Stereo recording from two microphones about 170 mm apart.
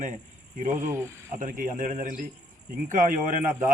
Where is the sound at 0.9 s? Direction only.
15° right (ahead or behind).